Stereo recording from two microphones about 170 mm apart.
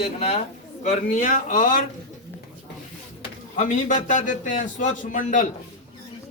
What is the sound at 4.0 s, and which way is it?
A man's voice, 50° left (ahead or behind).